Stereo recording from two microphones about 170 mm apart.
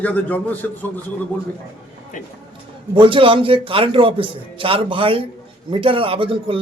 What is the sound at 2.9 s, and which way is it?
A man's voice, 30° right (ahead or behind).